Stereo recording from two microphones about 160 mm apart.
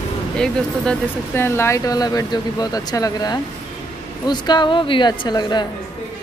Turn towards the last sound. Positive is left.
turn(degrees=25)  # may be behind; listen again after turning